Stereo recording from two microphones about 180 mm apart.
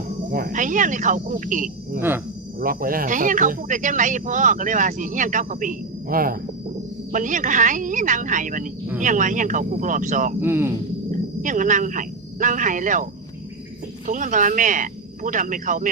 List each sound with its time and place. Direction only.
0.3 s speech: 50° right (ahead or behind)
2.0 s speech: 10° right (ahead or behind)
2.6 s speech: 50° right (ahead or behind)
10.4 s speech: 15° right (ahead or behind)
11.1 s speech: 45° right (ahead or behind)
14.1 s speech: 45° right (ahead or behind)